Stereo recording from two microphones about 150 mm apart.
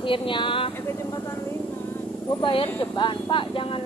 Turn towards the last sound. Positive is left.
turn(degrees=35)  # may be behind; listen again after turning